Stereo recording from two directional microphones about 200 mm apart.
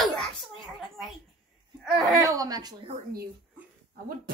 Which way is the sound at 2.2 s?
15° right (ahead or behind).